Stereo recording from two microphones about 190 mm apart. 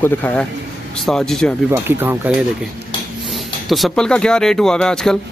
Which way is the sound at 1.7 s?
10° right (ahead or behind).